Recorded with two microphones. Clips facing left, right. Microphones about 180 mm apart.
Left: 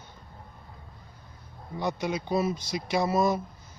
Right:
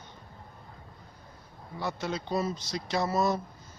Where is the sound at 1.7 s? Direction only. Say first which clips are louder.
Left 4 dB; 15° left (ahead or behind).